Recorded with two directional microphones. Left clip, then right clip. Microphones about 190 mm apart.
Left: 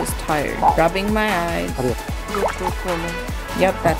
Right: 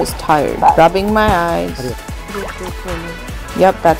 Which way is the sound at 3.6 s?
15° right (ahead or behind).